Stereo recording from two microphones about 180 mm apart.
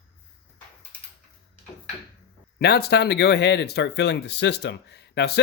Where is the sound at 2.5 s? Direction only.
65° left (ahead or behind).